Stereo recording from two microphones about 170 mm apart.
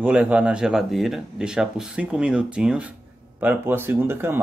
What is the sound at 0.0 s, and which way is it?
Speech, 5° right (ahead or behind).